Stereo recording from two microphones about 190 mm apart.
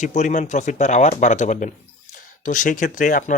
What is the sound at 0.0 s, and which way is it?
Speech, 40° left (ahead or behind).